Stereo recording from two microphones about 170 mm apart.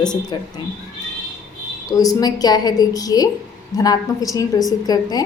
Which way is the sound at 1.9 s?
20° left (ahead or behind).